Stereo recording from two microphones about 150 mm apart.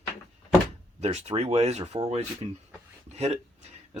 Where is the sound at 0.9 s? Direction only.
45° right (ahead or behind).